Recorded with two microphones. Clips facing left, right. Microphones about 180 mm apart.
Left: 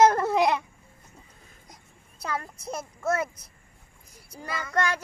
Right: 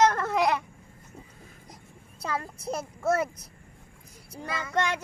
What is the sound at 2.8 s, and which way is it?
Speech, 10° right (ahead or behind).